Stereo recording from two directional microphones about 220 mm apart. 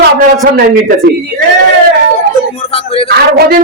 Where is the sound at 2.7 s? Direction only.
25° left (ahead or behind).